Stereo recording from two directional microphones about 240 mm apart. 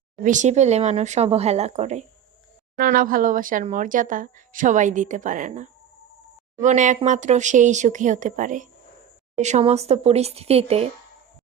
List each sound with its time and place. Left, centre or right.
0.2 s speech: right